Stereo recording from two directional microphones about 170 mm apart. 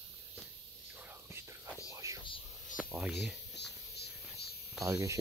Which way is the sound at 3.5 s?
80° left.